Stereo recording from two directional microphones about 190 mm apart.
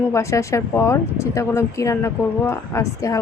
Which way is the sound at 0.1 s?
15° left (ahead or behind).